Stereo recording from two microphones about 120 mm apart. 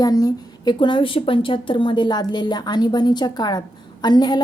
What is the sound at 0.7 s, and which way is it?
A woman's voice, 45° left (ahead or behind).